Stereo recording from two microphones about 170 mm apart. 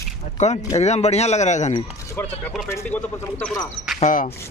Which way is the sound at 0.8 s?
40° left (ahead or behind).